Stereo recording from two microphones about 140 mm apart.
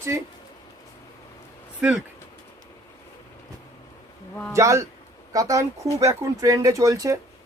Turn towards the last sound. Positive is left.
turn(degrees=-25)  # may be behind; listen again after turning